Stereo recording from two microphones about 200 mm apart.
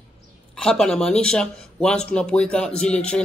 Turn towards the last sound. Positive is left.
turn(degrees=5)  # may be behind; listen again after turning